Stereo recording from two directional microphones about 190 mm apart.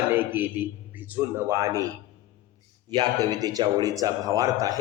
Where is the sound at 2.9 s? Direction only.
20° right (ahead or behind).